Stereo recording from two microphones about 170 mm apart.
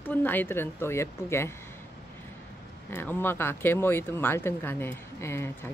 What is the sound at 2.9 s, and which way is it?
A woman's voice, 10° left (ahead or behind).